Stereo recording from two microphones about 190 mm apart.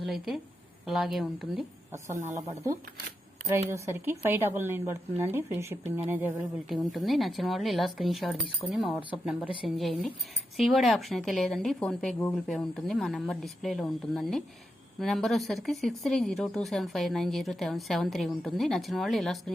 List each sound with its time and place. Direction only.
0.0 s speech: centre (ahead or behind)
2.2 s speech: 15° right (ahead or behind); by 9.0 s centre (ahead or behind)
9.0 s speech: 25° left (ahead or behind)
9.2 s speech: 5° right (ahead or behind)